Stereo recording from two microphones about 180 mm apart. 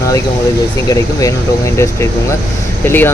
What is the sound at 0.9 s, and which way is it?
Speech, 20° left (ahead or behind).